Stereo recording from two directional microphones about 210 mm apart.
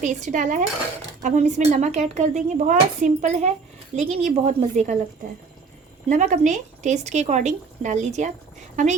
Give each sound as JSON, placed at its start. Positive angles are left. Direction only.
{"t": 0.0, "sound": "speech", "side_deg": -35}
{"t": 6.1, "sound": "speech", "side_deg": -35}